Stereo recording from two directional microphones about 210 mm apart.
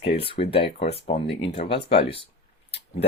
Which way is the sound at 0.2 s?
25° left (ahead or behind).